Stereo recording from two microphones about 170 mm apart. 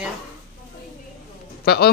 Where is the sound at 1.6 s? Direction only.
65° left (ahead or behind).